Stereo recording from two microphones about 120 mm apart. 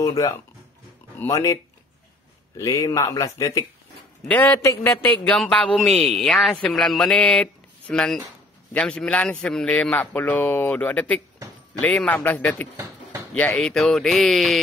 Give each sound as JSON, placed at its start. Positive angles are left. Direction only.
{"t": 0.0, "sound": "a man's voice", "side_deg": 30}
{"t": 7.9, "sound": "mantra", "side_deg": 5}
{"t": 8.7, "sound": "a man's voice", "side_deg": 10}
{"t": 13.6, "sound": "mantra", "side_deg": 5}